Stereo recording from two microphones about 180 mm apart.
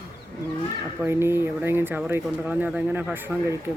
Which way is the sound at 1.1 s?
15° right (ahead or behind).